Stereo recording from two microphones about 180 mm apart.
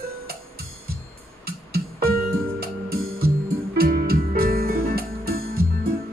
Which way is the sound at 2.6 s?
55° right (ahead or behind).